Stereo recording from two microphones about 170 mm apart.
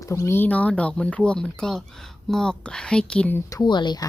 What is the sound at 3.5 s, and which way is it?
Speech, 25° left (ahead or behind).